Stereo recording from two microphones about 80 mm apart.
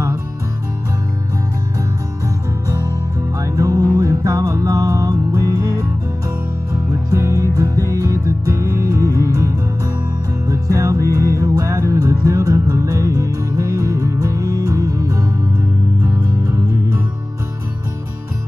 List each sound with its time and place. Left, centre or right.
2.2 s music: right